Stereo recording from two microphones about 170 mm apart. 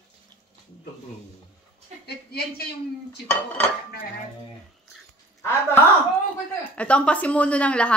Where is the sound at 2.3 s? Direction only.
70° left (ahead or behind).